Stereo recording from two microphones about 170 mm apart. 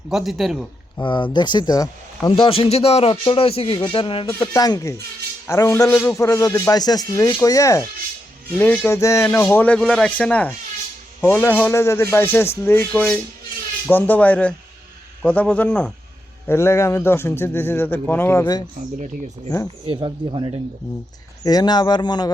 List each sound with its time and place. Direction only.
0.1 s a man's voice: centre (ahead or behind)
1.0 s speech: 25° left (ahead or behind)
4.3 s a man's voice: 20° left (ahead or behind)
19.8 s speech: 30° right (ahead or behind)
21.4 s a man's voice: 25° left (ahead or behind)